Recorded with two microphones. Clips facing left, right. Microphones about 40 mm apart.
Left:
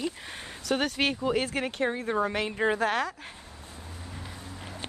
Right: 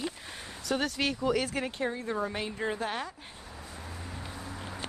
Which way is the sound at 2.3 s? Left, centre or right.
Left.